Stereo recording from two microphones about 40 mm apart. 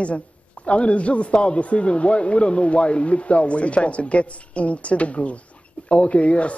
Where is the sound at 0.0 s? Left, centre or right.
Left.